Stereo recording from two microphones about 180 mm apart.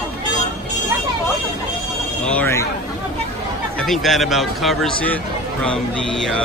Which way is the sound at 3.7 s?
Centre (ahead or behind).